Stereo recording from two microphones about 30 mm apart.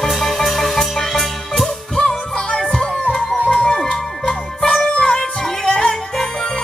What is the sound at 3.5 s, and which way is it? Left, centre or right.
Music, left.